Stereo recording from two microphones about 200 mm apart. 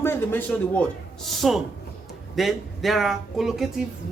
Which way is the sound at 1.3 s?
Centre (ahead or behind).